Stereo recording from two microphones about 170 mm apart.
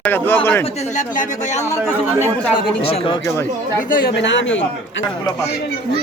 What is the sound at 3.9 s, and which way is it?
Speech, 60° left (ahead or behind).